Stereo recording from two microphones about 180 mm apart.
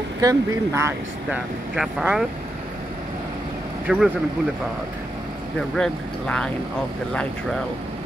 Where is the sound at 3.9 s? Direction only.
5° right (ahead or behind).